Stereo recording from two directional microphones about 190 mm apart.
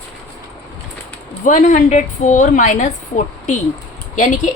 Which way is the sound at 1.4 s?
40° left (ahead or behind).